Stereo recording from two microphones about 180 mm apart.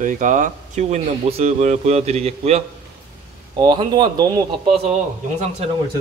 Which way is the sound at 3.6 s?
25° right (ahead or behind).